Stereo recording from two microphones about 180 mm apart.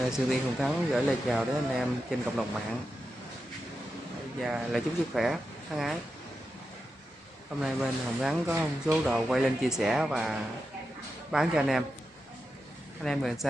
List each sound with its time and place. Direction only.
0.0 s speech: centre (ahead or behind)
4.4 s speech: centre (ahead or behind)
7.6 s speech: 5° right (ahead or behind)
11.3 s speech: centre (ahead or behind)
13.0 s speech: 5° left (ahead or behind)